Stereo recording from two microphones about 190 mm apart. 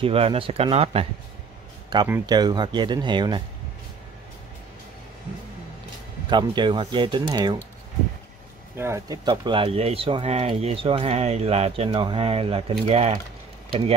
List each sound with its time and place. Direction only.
0.0 s speech: 30° right (ahead or behind)
2.0 s speech: 10° right (ahead or behind)
2.3 s speech: 20° right (ahead or behind)
6.3 s speech: 25° right (ahead or behind)
8.7 s speech: 15° right (ahead or behind); by 13.9 s 30° right (ahead or behind)